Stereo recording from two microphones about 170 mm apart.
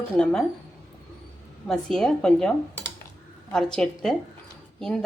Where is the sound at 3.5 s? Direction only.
5° left (ahead or behind).